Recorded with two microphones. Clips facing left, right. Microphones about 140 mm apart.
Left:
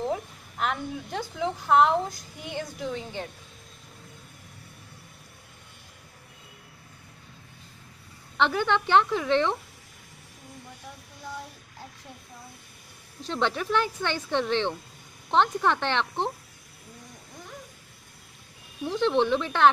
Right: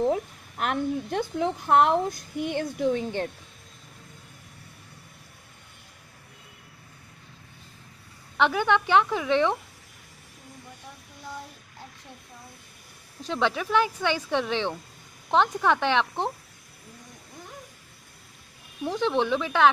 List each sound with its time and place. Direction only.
0.6 s a woman's voice: 55° right (ahead or behind)
8.4 s speech: 10° right (ahead or behind)
13.2 s speech: 5° right (ahead or behind)
18.9 s speech: 10° right (ahead or behind)